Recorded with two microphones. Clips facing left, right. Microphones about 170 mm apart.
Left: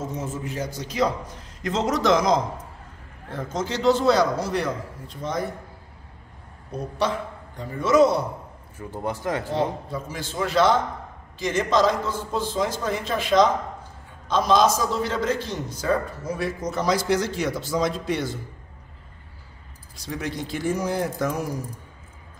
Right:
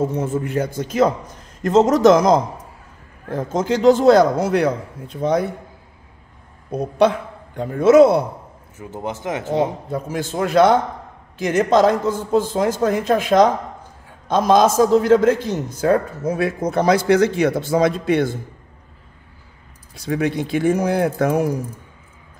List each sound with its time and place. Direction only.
0.0 s a man's voice: 60° right (ahead or behind)
7.5 s speech: 60° right (ahead or behind)
8.7 s speech: 20° right (ahead or behind)
9.8 s a man's voice: 50° right (ahead or behind)
20.0 s speech: 60° right (ahead or behind)